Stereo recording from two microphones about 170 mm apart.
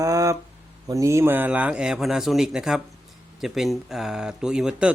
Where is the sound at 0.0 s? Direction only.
20° right (ahead or behind).